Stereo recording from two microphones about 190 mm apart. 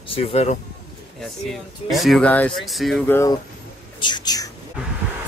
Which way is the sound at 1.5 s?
Centre (ahead or behind).